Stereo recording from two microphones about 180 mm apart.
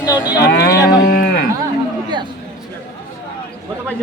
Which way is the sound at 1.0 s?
55° left (ahead or behind).